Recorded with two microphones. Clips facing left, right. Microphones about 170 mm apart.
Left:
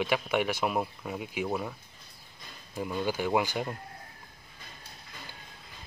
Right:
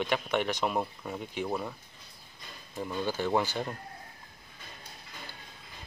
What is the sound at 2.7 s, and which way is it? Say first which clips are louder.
Speech: left 1 dB; 5° left (ahead or behind).